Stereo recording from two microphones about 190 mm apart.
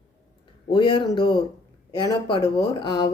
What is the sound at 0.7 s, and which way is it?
Speech, 25° left (ahead or behind).